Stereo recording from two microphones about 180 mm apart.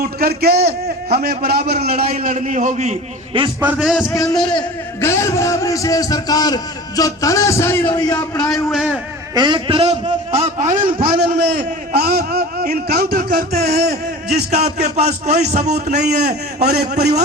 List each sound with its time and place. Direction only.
0.2 s a man's voice: 60° right (ahead or behind); by 3.5 s 35° right (ahead or behind)
3.6 s a man's voice: 5° right (ahead or behind)
4.1 s a man's voice: 20° left (ahead or behind)
8.7 s a man's voice: centre (ahead or behind)
9.3 s a man's voice: 25° right (ahead or behind); by 10.8 s 40° right (ahead or behind)
10.8 s a man's voice: 25° right (ahead or behind)
11.9 s a man's voice: 60° right (ahead or behind)
14.5 s a man's voice: 40° right (ahead or behind)
16.2 s a man's voice: 65° right (ahead or behind)